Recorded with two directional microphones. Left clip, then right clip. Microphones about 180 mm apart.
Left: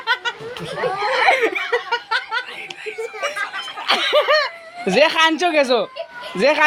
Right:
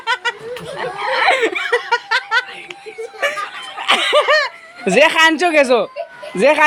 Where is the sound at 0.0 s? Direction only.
15° right (ahead or behind).